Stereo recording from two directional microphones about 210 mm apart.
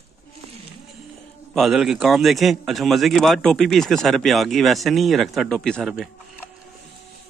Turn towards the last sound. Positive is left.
turn(degrees=0)  # may be behind; listen again after turning